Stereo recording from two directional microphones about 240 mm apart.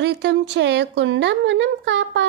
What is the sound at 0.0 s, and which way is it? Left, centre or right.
Speech, right.